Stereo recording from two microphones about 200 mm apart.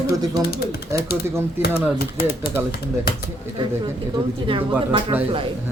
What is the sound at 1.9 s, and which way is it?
Speech, 50° left (ahead or behind).